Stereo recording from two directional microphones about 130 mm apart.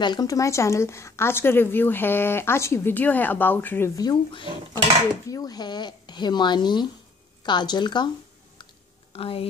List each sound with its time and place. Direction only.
0.0 s a woman's voice: 35° left (ahead or behind); by 3.9 s 15° left (ahead or behind)
3.9 s speech: 30° left (ahead or behind)
9.1 s a woman's voice: 45° left (ahead or behind)